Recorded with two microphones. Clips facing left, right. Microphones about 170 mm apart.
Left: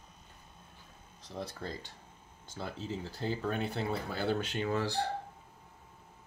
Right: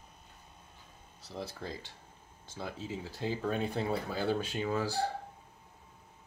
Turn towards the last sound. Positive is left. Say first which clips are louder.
# even
turn(degrees=-10)  # may be behind; listen again after turning